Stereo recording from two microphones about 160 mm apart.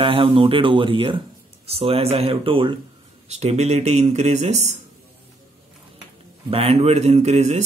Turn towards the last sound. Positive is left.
turn(degrees=-45)  # may be behind; listen again after turning